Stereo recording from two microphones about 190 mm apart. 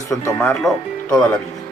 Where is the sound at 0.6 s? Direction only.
5° left (ahead or behind).